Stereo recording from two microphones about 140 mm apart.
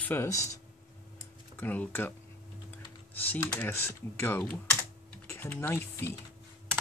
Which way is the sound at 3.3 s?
15° left (ahead or behind).